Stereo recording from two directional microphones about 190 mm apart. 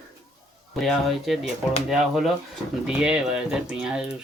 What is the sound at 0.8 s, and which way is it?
Speech, centre (ahead or behind).